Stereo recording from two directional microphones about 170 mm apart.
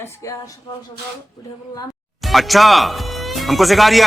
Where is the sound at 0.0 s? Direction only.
15° left (ahead or behind).